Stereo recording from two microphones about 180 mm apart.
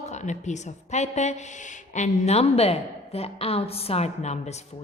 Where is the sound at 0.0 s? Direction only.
40° left (ahead or behind).